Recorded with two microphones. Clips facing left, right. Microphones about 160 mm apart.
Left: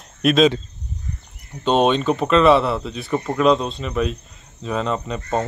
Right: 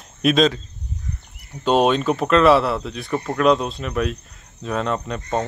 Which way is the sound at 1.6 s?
5° right (ahead or behind).